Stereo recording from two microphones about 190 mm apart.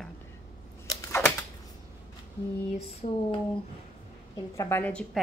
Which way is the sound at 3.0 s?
35° left (ahead or behind).